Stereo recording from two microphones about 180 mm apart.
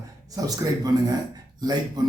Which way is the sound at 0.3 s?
20° right (ahead or behind).